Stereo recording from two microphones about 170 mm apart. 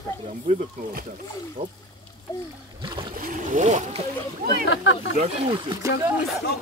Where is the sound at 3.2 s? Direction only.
50° right (ahead or behind).